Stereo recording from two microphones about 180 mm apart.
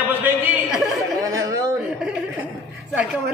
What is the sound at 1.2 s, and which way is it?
Speech, 20° right (ahead or behind).